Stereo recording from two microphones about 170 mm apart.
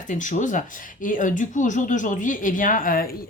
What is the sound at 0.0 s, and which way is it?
Speech, 45° left (ahead or behind).